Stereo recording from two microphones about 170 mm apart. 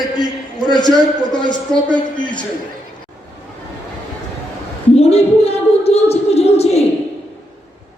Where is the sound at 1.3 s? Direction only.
25° left (ahead or behind).